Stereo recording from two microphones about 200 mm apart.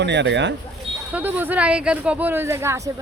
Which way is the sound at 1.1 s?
10° right (ahead or behind).